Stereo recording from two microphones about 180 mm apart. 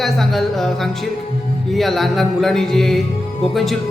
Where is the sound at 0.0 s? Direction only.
Centre (ahead or behind).